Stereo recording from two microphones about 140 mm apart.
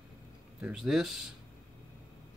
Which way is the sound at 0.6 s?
5° right (ahead or behind).